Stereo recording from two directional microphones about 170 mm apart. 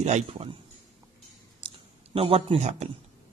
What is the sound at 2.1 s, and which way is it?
Speech, 35° right (ahead or behind).